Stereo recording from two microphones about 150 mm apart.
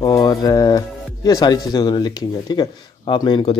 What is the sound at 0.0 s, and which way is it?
Speech, 25° left (ahead or behind).